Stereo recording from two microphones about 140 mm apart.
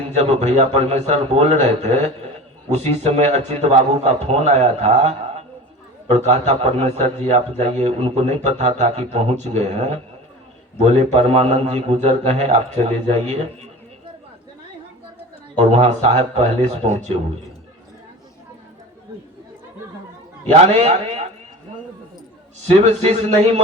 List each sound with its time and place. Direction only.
0.2 s a man's voice: 55° right (ahead or behind)
15.5 s a man's voice: 50° right (ahead or behind)
20.8 s a man's voice: 55° right (ahead or behind)
22.6 s a man's voice: 55° right (ahead or behind)